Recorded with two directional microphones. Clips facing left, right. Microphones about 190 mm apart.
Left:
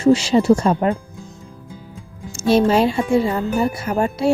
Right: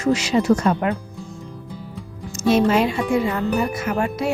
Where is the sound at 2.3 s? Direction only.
30° left (ahead or behind).